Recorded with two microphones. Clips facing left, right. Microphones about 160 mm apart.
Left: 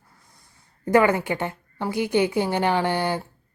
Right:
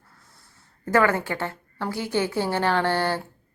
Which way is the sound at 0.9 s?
15° left (ahead or behind).